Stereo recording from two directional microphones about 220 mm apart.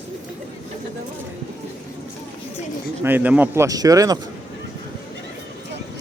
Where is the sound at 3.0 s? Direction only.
10° right (ahead or behind).